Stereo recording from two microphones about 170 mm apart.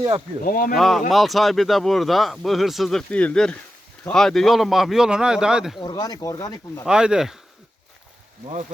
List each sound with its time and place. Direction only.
0.4 s speech: 55° left (ahead or behind)
0.8 s speech: centre (ahead or behind)
5.8 s speech: 25° left (ahead or behind)
6.8 s speech: 5° right (ahead or behind)